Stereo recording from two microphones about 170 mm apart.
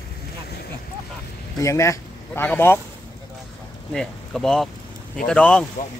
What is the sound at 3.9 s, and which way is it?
Speech, 5° left (ahead or behind).